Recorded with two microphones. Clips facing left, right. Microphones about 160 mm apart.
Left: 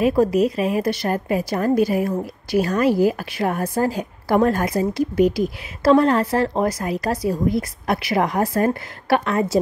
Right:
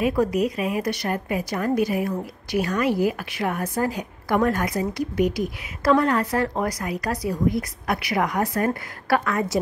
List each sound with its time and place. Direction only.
0.0 s a woman's voice: 30° left (ahead or behind)